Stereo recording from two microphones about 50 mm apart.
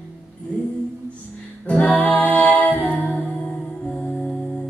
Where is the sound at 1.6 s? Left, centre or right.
Left.